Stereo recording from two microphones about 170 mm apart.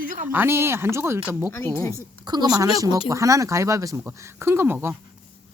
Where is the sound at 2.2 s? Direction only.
25° right (ahead or behind).